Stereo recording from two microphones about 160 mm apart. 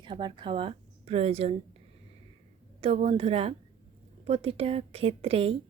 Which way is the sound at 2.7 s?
40° right (ahead or behind).